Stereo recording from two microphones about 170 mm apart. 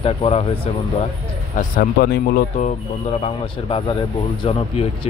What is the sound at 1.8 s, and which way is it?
Speech, 65° left (ahead or behind).